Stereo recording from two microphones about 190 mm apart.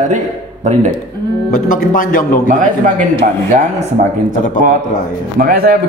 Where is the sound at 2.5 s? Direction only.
45° right (ahead or behind).